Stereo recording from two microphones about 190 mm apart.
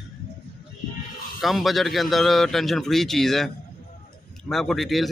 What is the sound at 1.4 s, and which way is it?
Speech, centre (ahead or behind).